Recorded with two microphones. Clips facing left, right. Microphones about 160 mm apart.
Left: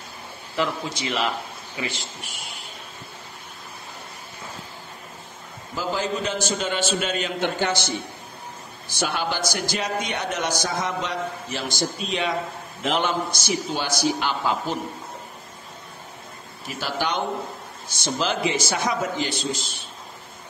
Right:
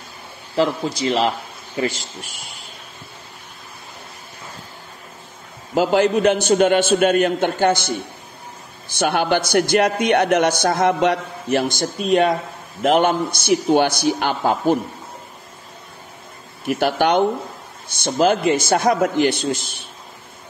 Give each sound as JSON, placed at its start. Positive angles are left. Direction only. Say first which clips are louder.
{"t": 0.6, "sound": "speech", "louder": "right 7 dB", "side_deg": -35}
{"t": 5.8, "sound": "a man's voice", "louder": "right 10 dB", "side_deg": -70}
{"t": 8.9, "sound": "a man's voice", "louder": "right 8 dB", "side_deg": -60}
{"t": 16.6, "sound": "a man's voice", "louder": "right 10 dB", "side_deg": -60}